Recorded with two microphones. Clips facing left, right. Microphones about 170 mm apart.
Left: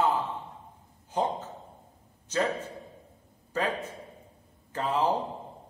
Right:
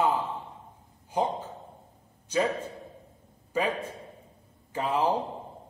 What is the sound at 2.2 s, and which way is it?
A man's voice, 10° right (ahead or behind).